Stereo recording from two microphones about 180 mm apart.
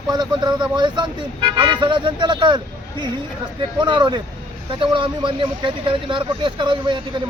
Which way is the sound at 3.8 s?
25° right (ahead or behind).